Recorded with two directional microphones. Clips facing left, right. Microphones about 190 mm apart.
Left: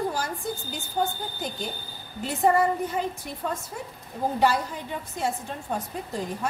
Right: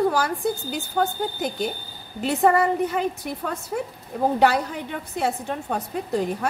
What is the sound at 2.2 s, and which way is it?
A woman's voice, 70° right (ahead or behind).